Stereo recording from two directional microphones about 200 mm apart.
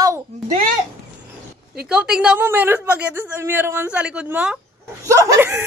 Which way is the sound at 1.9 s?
5° right (ahead or behind).